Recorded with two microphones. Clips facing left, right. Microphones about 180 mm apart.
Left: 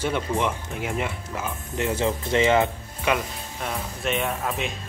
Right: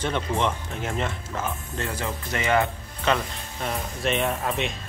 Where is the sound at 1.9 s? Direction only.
25° left (ahead or behind).